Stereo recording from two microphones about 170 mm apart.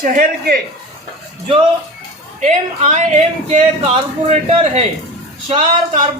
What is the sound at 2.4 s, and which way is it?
A man's voice, 45° right (ahead or behind).